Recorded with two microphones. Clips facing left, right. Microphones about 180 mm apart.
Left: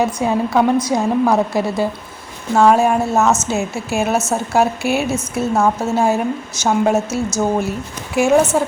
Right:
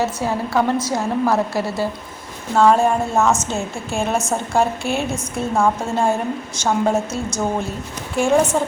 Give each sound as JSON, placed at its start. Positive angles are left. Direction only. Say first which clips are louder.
{"t": 0.0, "sound": "a woman's voice", "louder": "left 4 dB", "side_deg": 20}